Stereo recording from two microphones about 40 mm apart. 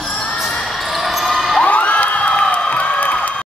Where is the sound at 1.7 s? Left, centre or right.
Left.